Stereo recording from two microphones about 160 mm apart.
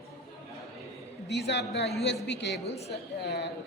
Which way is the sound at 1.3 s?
90° left.